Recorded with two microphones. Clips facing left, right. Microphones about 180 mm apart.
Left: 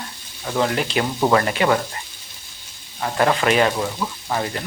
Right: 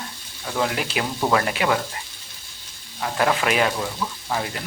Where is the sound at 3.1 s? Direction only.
5° right (ahead or behind).